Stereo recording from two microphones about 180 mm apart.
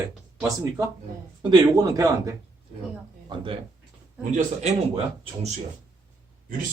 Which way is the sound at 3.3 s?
30° right (ahead or behind).